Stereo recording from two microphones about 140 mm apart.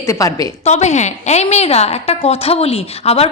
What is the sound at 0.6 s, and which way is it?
A woman's voice, 55° left (ahead or behind).